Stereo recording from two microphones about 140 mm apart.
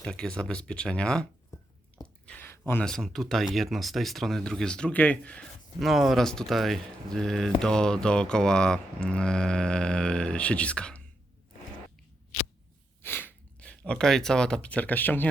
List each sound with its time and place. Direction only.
0.0 s speech: 5° left (ahead or behind)
2.2 s a sound: 10° left (ahead or behind)
2.8 s speech: 5° left (ahead or behind)
13.0 s speech: 15° left (ahead or behind)